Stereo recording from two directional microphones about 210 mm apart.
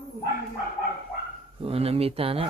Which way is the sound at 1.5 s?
25° right (ahead or behind).